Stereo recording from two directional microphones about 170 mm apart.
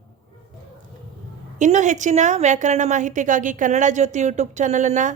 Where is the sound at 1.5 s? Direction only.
45° right (ahead or behind).